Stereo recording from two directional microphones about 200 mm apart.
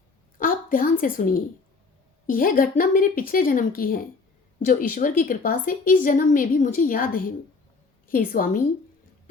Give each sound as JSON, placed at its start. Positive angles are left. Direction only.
{"t": 0.3, "sound": "a woman's voice", "side_deg": 45}